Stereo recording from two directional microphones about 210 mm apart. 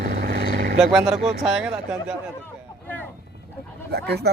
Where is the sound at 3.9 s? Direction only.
50° right (ahead or behind).